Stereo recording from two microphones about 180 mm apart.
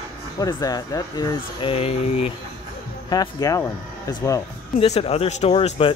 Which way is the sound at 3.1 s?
20° left (ahead or behind).